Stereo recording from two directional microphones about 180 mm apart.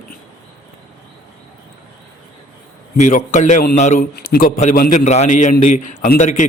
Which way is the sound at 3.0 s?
40° left (ahead or behind).